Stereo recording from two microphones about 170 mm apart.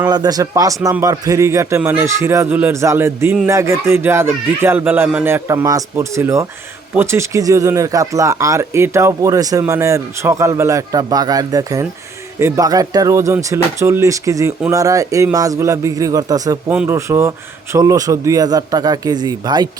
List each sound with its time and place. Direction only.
0.1 s a man's voice: 20° right (ahead or behind)